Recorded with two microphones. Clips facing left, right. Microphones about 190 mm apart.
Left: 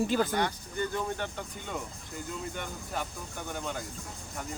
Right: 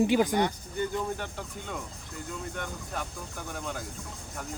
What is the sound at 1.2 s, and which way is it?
Speech, 5° right (ahead or behind).